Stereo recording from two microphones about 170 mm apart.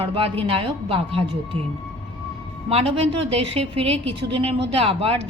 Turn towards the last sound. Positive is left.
turn(degrees=-35)  # may be behind; listen again after turning